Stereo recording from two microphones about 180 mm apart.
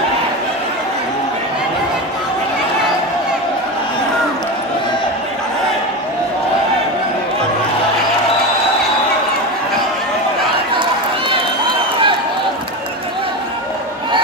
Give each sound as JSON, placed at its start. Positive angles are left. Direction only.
{"t": 10.8, "sound": "run", "side_deg": -25}